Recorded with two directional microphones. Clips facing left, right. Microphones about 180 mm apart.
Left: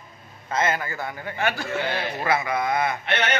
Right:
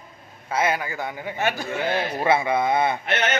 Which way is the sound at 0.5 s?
10° right (ahead or behind).